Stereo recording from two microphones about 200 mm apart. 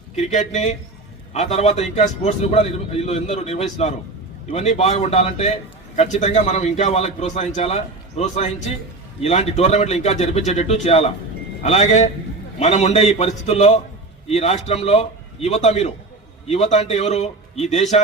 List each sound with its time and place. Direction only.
0.2 s a man's voice: 35° left (ahead or behind)